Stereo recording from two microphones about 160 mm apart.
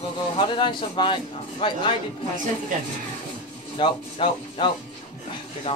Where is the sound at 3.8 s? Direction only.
30° left (ahead or behind).